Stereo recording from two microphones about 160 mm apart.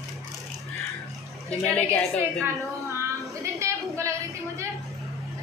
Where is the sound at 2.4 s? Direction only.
15° right (ahead or behind).